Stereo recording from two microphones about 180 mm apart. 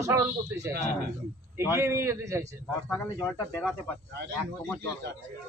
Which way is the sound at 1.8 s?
15° right (ahead or behind).